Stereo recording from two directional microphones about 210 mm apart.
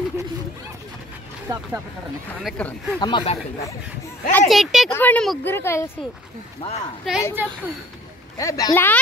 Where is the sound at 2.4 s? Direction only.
5° left (ahead or behind).